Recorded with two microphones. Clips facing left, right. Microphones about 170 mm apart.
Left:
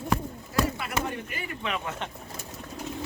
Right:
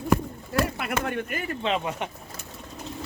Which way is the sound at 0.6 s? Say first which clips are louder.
Right 1 dB; 65° right (ahead or behind).